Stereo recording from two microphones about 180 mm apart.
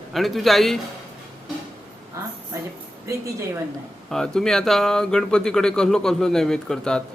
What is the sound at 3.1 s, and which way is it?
Speech, 15° right (ahead or behind).